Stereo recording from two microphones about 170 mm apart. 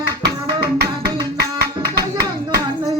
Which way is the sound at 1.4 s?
70° right (ahead or behind).